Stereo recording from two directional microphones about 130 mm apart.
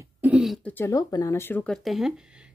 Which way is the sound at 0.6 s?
15° left (ahead or behind).